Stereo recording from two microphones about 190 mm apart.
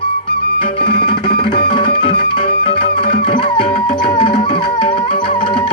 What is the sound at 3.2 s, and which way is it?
Music, 30° left (ahead or behind).